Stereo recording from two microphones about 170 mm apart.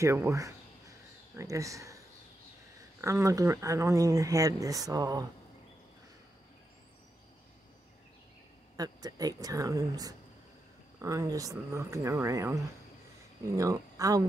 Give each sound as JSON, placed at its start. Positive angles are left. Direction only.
{"t": 0.0, "sound": "speech", "side_deg": -15}
{"t": 3.0, "sound": "speech", "side_deg": -15}
{"t": 8.7, "sound": "speech", "side_deg": -20}